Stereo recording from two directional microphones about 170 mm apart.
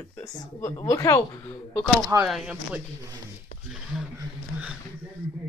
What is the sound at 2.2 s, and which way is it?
Speech, 5° right (ahead or behind).